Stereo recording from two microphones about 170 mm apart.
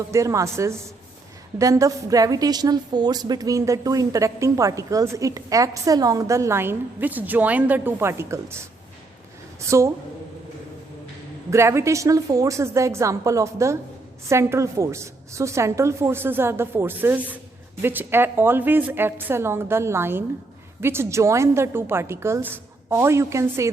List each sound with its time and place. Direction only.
0.1 s a woman's voice: 20° right (ahead or behind)
9.6 s a woman's voice: 15° right (ahead or behind)
11.5 s a woman's voice: 15° right (ahead or behind)